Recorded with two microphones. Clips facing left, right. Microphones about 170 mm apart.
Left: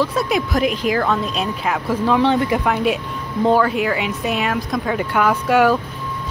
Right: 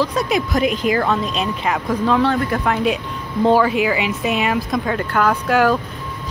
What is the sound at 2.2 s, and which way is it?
Speech, 20° left (ahead or behind).